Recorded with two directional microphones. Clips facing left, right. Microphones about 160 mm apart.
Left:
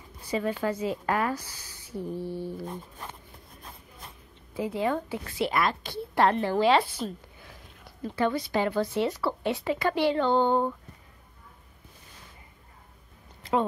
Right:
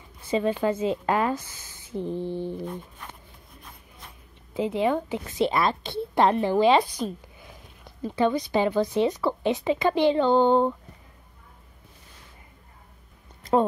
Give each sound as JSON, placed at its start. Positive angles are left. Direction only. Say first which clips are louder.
{"t": 0.3, "sound": "speech", "louder": "right 4 dB", "side_deg": -25}
{"t": 4.6, "sound": "speech", "louder": "right 4 dB", "side_deg": -20}
{"t": 13.4, "sound": "a sound", "louder": "right 5 dB", "side_deg": -40}